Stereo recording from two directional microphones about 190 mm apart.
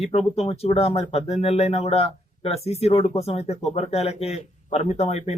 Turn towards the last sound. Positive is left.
turn(degrees=35)  # may be behind; listen again after turning